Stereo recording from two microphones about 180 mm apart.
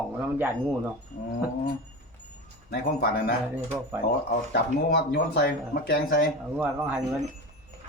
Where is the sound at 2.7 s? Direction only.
65° left (ahead or behind).